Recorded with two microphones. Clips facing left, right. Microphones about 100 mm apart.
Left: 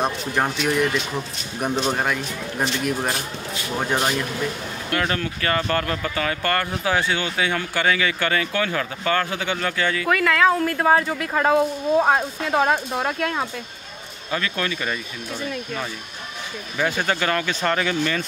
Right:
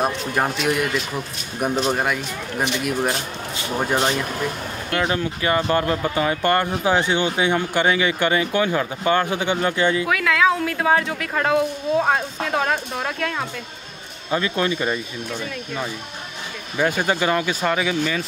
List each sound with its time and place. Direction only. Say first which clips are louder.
0.0 s speech: right 1 dB; 5° right (ahead or behind)
5.0 s speech: right 5 dB; 15° right (ahead or behind)
10.0 s speech: left 1 dB; centre (ahead or behind)
14.3 s speech: right 4 dB; 25° right (ahead or behind)
16.7 s speech: right 2 dB; 10° right (ahead or behind)